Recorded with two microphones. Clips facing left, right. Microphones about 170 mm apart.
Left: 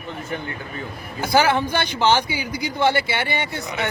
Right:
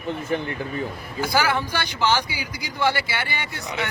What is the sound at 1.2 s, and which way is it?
Speech, 25° left (ahead or behind).